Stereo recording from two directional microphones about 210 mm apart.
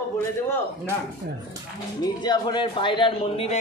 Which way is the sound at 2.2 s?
20° left (ahead or behind).